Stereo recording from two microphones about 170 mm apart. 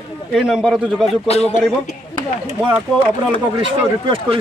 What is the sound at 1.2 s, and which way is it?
Speech, 40° left (ahead or behind).